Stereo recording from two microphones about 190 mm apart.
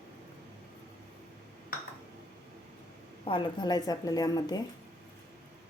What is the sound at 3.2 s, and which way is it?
Speech, 25° left (ahead or behind).